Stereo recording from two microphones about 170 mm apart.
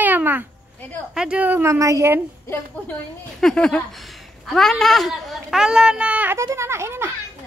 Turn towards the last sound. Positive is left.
turn(degrees=-15)  # may be behind; listen again after turning